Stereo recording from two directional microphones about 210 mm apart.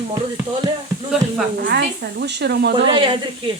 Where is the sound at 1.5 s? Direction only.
50° right (ahead or behind).